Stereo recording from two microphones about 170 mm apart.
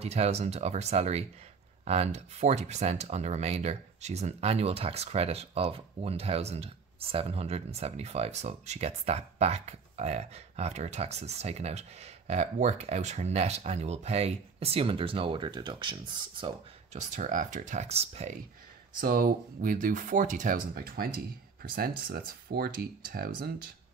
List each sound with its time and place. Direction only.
0.0 s speech: 40° right (ahead or behind)
17.1 s speech: 50° right (ahead or behind)
18.9 s speech: 60° right (ahead or behind)